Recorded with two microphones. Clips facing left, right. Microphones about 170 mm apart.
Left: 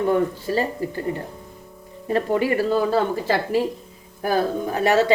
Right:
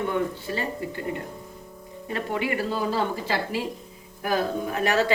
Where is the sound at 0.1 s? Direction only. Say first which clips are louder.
Left 6 dB; 40° left (ahead or behind).